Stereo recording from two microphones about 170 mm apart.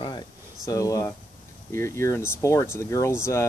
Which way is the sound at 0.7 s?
20° left (ahead or behind).